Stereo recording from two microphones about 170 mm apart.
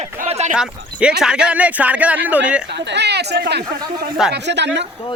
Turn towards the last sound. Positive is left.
turn(degrees=-90)